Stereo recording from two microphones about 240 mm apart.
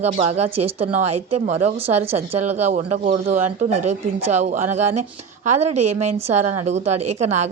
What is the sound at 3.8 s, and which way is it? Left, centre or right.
Speech, right.